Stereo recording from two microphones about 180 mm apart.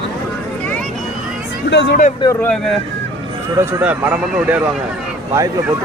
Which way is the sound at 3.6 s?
10° right (ahead or behind).